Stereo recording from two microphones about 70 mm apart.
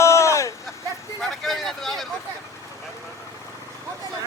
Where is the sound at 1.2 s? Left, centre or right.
Centre.